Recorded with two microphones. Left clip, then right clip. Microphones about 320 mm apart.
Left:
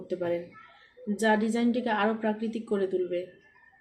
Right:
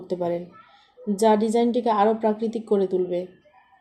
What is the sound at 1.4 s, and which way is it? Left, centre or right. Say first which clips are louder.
A woman's voice: right 7 dB; right.